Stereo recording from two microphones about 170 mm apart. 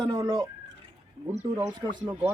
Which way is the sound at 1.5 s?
15° right (ahead or behind).